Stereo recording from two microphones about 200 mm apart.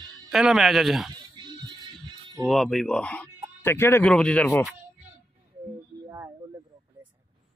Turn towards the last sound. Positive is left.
turn(degrees=-15)  # may be behind; listen again after turning